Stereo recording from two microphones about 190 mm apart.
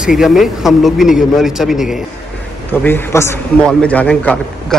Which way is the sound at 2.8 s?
10° left (ahead or behind).